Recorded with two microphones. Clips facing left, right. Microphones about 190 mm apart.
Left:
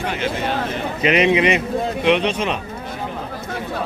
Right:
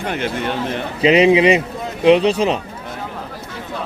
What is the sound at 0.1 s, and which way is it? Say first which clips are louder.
Speech: right 4 dB; 55° right (ahead or behind).